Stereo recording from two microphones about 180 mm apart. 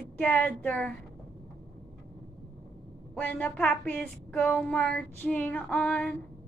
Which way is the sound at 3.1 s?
10° left (ahead or behind).